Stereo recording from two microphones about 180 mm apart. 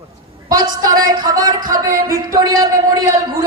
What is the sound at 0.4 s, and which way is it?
A woman's voice, 20° right (ahead or behind).